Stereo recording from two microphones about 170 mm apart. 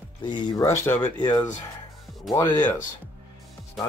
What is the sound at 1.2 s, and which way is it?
Speech, 25° left (ahead or behind).